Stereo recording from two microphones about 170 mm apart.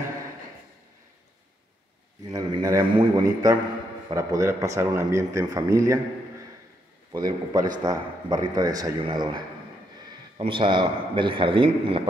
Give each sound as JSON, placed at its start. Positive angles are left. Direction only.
{"t": 2.3, "sound": "a man's voice", "side_deg": -20}
{"t": 7.1, "sound": "a man's voice", "side_deg": -25}